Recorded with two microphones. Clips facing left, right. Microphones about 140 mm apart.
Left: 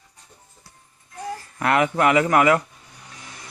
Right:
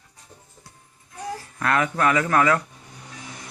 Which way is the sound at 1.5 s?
20° left (ahead or behind).